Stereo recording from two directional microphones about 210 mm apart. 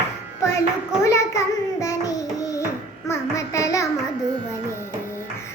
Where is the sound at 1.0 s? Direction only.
15° left (ahead or behind).